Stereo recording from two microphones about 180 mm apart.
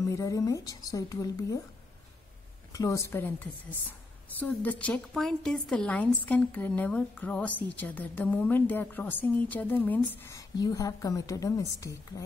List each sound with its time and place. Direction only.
0.1 s a woman's voice: 20° left (ahead or behind)
2.7 s a woman's voice: 20° left (ahead or behind)